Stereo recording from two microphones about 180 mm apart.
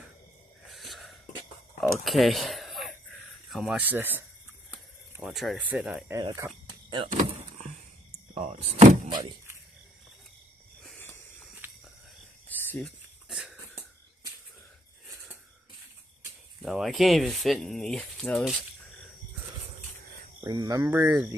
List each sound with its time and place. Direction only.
0.7 s a sound: centre (ahead or behind)
5.2 s speech: centre (ahead or behind)
6.1 s speech: 20° right (ahead or behind)
7.1 s vehicle: 45° right (ahead or behind)
8.4 s speech: 35° right (ahead or behind)
11.6 s a sound: 10° right (ahead or behind)
12.4 s cricket: 10° left (ahead or behind)
13.3 s cough: centre (ahead or behind)
16.6 s speech: centre (ahead or behind)
20.4 s speech: 20° right (ahead or behind)